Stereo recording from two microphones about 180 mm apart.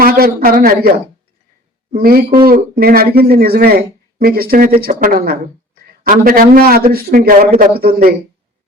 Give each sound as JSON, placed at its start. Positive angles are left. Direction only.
{"t": 0.0, "sound": "speech", "side_deg": -55}